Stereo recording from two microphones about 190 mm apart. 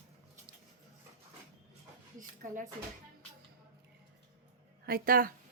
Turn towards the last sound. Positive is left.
turn(degrees=-50)  # may be behind; listen again after turning